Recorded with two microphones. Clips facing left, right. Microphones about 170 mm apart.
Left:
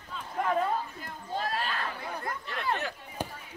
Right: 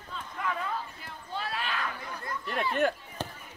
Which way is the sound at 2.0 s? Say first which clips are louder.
Left 4 dB; 55° left (ahead or behind).